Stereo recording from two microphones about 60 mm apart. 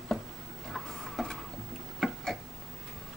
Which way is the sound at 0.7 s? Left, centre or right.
Centre.